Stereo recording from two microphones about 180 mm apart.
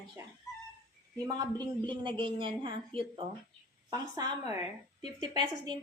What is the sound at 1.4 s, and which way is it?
A woman's voice, 25° right (ahead or behind).